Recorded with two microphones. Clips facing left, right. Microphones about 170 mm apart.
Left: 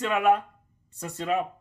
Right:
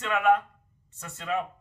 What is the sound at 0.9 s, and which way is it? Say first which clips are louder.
Speech: left 9 dB; 35° left (ahead or behind).